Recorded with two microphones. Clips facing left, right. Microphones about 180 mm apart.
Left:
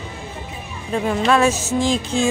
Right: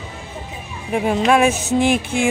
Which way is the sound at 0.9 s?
15° right (ahead or behind).